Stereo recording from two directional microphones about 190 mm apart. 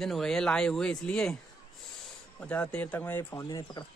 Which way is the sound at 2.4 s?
5° left (ahead or behind).